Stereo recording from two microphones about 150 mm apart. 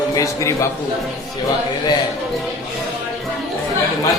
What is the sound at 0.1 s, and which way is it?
Speech, 20° left (ahead or behind).